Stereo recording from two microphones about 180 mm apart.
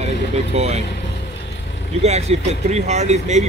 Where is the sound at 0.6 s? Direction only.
35° right (ahead or behind).